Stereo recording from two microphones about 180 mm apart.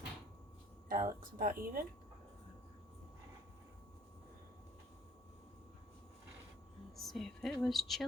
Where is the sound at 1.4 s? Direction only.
50° right (ahead or behind).